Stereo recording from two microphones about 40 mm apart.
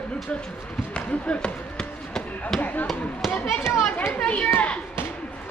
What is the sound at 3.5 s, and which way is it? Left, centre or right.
Speech, centre.